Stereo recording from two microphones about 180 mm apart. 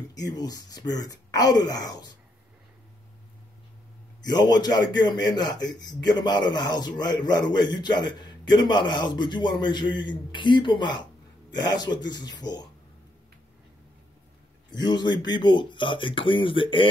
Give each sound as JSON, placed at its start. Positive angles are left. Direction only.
{"t": 0.1, "sound": "a man's voice", "side_deg": 20}
{"t": 4.2, "sound": "a man's voice", "side_deg": 20}
{"t": 14.7, "sound": "a man's voice", "side_deg": 25}